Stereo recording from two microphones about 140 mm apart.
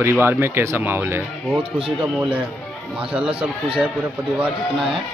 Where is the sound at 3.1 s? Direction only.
40° right (ahead or behind).